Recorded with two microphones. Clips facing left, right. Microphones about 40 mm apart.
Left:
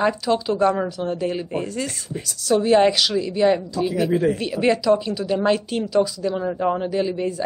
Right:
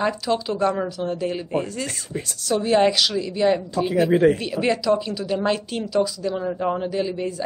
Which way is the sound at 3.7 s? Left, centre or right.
Right.